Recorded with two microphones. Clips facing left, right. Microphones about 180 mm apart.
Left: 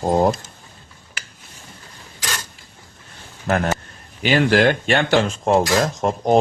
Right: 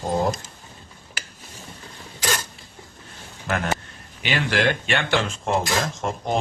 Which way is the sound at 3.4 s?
40° left (ahead or behind).